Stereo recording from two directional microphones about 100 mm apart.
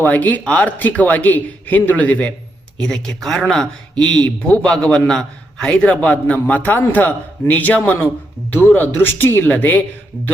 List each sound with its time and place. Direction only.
0.0 s a man's voice: 15° left (ahead or behind)